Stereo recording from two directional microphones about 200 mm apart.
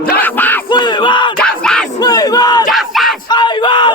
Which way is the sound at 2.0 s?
20° left (ahead or behind).